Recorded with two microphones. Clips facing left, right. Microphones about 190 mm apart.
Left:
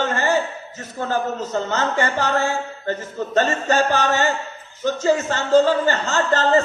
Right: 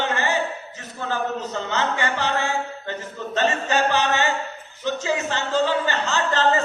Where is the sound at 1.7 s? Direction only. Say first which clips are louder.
Left 1 dB; 45° left (ahead or behind).